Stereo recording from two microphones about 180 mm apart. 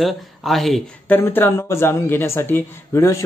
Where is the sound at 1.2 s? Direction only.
10° left (ahead or behind).